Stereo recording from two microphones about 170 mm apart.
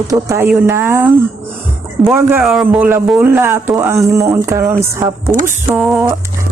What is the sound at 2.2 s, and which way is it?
Speech, 15° right (ahead or behind).